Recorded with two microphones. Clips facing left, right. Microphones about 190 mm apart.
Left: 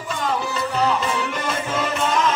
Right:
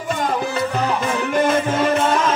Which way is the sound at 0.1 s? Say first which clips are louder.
Right 3 dB; 50° right (ahead or behind).